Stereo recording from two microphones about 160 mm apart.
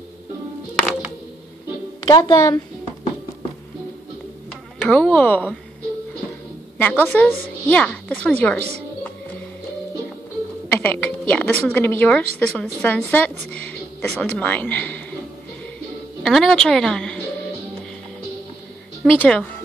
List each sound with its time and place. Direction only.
2.0 s a woman's voice: 20° left (ahead or behind)
4.7 s a woman's voice: 5° left (ahead or behind)
6.8 s a woman's voice: 10° left (ahead or behind)
10.7 s a sound: 10° left (ahead or behind)
12.4 s a woman's voice: 10° left (ahead or behind)
16.2 s a woman's voice: centre (ahead or behind)
19.1 s a woman's voice: 5° left (ahead or behind)